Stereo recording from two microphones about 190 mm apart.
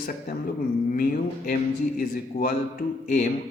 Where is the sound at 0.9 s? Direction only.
45° left (ahead or behind).